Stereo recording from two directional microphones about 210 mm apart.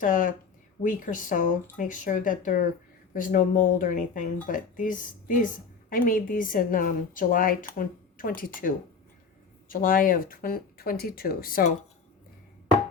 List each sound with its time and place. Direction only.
0.0 s speech: 40° left (ahead or behind)